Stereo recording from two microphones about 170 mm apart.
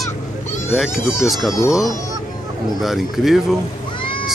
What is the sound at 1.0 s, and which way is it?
Speech, 15° left (ahead or behind).